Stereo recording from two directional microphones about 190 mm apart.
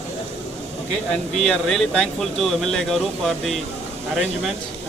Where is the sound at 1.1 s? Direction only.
5° left (ahead or behind).